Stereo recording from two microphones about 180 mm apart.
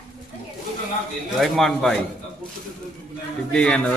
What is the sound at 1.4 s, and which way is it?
Speech, centre (ahead or behind).